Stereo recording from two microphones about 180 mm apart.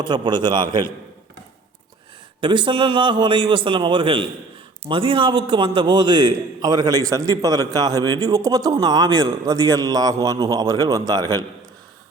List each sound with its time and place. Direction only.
0.0 s a man's voice: 25° right (ahead or behind)
2.4 s a man's voice: 25° right (ahead or behind)